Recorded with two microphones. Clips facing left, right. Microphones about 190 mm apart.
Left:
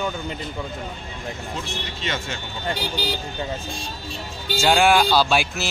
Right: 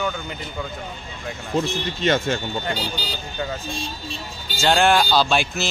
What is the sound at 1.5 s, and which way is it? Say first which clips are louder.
Speech: right 8 dB; 45° right (ahead or behind).